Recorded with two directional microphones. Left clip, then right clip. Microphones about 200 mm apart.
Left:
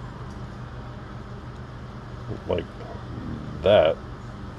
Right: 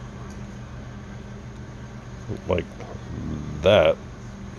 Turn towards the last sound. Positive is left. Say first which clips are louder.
# right 1 dB
turn(degrees=-20)  # may be behind; listen again after turning